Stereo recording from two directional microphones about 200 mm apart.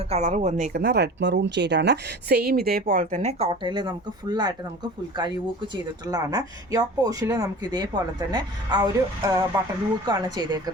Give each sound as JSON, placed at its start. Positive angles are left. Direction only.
{"t": 0.1, "sound": "speech", "side_deg": -35}
{"t": 0.7, "sound": "a woman's voice", "side_deg": -55}
{"t": 5.7, "sound": "speech", "side_deg": -20}